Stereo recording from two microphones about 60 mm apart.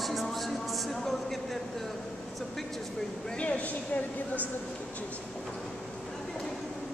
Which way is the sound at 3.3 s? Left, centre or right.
Centre.